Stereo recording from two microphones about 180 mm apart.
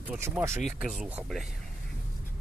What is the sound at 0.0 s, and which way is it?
Speech, 10° right (ahead or behind).